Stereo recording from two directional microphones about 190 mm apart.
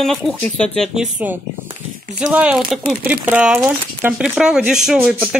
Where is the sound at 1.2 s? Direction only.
10° right (ahead or behind).